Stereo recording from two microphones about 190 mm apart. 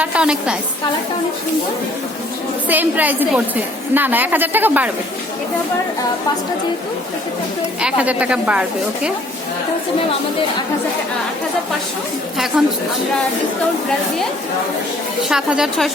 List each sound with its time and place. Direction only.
0.0 s a woman's voice: 5° right (ahead or behind)
2.6 s a woman's voice: 10° right (ahead or behind)
7.8 s a woman's voice: 5° right (ahead or behind)
12.5 s a woman's voice: 5° right (ahead or behind)
15.3 s a woman's voice: 5° right (ahead or behind)